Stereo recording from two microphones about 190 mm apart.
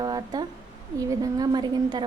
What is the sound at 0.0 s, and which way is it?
A woman's voice, 20° right (ahead or behind).